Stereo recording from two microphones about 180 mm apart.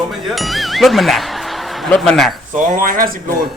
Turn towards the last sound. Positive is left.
turn(degrees=-50)  # may be behind; listen again after turning